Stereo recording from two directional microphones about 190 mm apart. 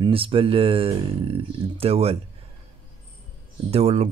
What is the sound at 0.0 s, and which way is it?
Speech, 30° right (ahead or behind).